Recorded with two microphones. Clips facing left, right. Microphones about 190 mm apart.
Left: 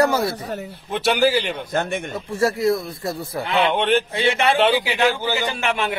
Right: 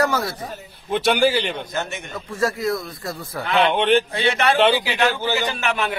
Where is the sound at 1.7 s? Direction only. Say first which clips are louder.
Left 5 dB; 55° left (ahead or behind).